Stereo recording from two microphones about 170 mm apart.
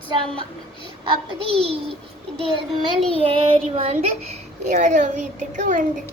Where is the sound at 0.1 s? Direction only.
30° right (ahead or behind).